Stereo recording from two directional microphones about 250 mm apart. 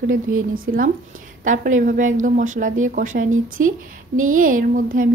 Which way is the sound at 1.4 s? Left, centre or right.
Right.